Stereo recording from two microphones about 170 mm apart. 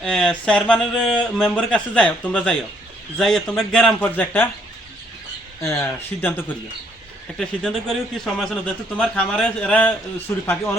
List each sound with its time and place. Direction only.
0.0 s a man's voice: 5° left (ahead or behind)
5.6 s speech: 15° left (ahead or behind)
7.3 s a man's voice: centre (ahead or behind)